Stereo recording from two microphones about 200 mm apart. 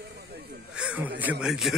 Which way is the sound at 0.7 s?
5° right (ahead or behind).